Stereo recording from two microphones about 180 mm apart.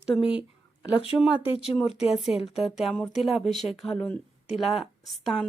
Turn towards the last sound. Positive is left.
turn(degrees=0)  # may be behind; listen again after turning